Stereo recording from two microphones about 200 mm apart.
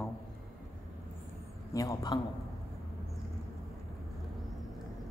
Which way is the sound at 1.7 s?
15° left (ahead or behind).